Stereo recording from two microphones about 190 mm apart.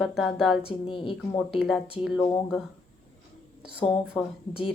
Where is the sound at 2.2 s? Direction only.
20° left (ahead or behind).